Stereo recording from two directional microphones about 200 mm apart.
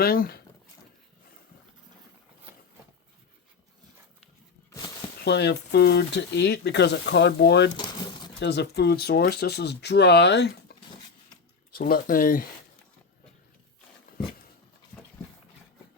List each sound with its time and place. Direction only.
0.0 s speech: 50° left (ahead or behind)
5.2 s speech: 55° left (ahead or behind)
11.7 s speech: 45° left (ahead or behind)